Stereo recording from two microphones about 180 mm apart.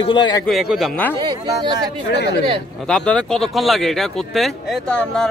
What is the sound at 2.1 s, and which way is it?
Speech, 70° left (ahead or behind).